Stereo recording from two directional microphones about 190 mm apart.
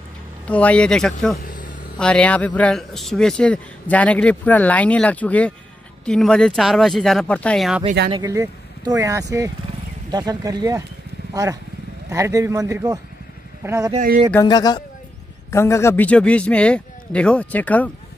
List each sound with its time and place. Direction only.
0.5 s speech: 5° left (ahead or behind)
1.4 s a sound: 45° left (ahead or behind)
2.0 s speech: 5° left (ahead or behind)
8.1 s speech: 15° right (ahead or behind)
12.1 s a man's voice: 15° right (ahead or behind)
14.4 s speech: 20° left (ahead or behind)